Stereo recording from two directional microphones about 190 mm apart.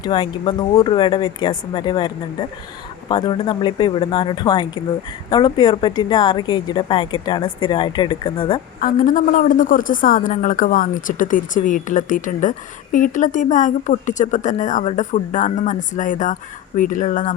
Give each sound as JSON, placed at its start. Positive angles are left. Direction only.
{"t": 0.0, "sound": "a woman's voice", "side_deg": 25}
{"t": 8.8, "sound": "a woman's voice", "side_deg": 45}